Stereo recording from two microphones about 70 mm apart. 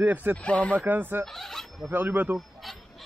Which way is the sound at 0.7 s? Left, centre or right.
Right.